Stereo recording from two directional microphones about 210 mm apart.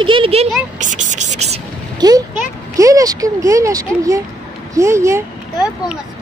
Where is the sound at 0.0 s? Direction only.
25° right (ahead or behind).